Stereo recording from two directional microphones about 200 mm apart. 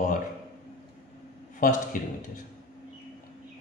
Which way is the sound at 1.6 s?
45° left (ahead or behind).